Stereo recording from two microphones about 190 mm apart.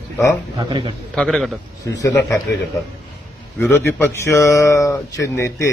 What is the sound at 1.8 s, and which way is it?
Speech, 15° left (ahead or behind).